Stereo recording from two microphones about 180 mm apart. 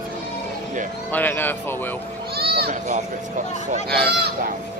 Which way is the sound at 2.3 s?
60° right (ahead or behind).